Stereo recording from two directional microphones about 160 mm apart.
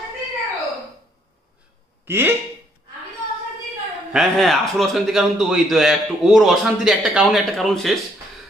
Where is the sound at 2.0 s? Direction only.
15° right (ahead or behind).